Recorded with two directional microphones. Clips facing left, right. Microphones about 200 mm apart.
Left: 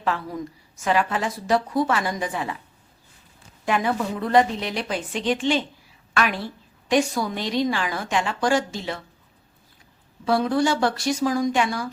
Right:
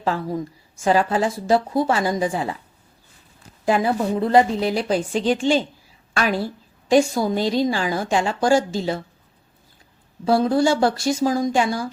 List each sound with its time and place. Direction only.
0.0 s a woman's voice: 30° right (ahead or behind)
3.7 s a woman's voice: 30° right (ahead or behind)
10.2 s a woman's voice: 30° right (ahead or behind)